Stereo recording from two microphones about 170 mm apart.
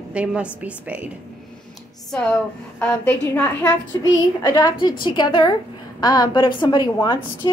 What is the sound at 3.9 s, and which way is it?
A woman's voice, 20° left (ahead or behind).